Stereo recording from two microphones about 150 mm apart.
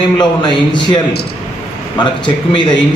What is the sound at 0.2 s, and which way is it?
Speech, 30° left (ahead or behind).